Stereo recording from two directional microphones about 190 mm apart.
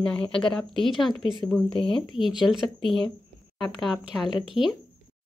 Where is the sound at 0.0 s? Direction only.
5° left (ahead or behind).